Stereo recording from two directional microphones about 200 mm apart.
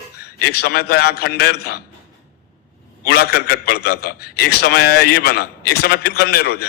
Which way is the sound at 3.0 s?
50° left (ahead or behind).